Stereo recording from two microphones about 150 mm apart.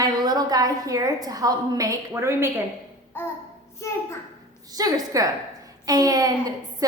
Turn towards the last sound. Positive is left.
turn(degrees=-25)  # may be behind; listen again after turning